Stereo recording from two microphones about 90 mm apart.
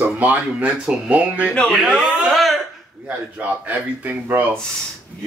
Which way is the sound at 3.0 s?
20° right (ahead or behind).